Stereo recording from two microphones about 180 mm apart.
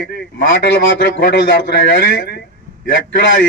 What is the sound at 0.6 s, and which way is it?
A man's voice, 80° left.